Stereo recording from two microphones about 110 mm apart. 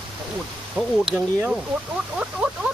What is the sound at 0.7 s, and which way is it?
Speech, 5° right (ahead or behind).